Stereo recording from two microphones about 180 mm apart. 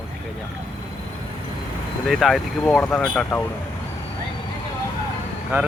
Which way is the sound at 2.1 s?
Centre (ahead or behind).